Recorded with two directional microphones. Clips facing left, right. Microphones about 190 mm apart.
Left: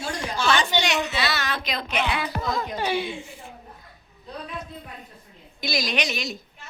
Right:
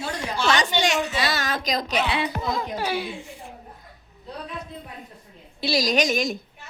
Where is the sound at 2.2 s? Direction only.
15° right (ahead or behind).